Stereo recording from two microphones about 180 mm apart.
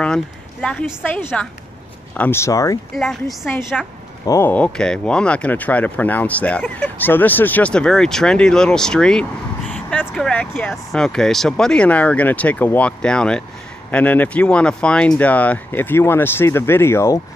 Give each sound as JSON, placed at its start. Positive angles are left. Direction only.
{"t": 0.0, "sound": "speech", "side_deg": 5}
{"t": 2.9, "sound": "speech", "side_deg": 0}